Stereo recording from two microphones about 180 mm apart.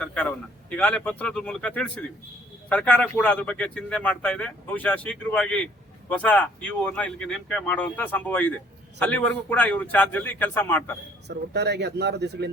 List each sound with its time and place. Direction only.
0.0 s a man's voice: 5° left (ahead or behind)
11.3 s speech: 70° right (ahead or behind)